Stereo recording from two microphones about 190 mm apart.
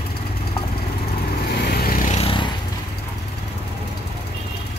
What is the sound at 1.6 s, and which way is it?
Lawn mower, 55° left (ahead or behind).